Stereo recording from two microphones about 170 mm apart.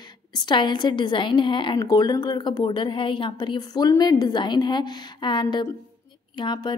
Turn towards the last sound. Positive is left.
turn(degrees=25)  # may be behind; listen again after turning